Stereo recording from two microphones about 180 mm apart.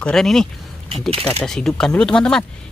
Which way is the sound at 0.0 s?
Centre (ahead or behind).